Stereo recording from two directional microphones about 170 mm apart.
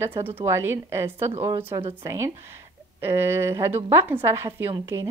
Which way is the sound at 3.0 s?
15° right (ahead or behind).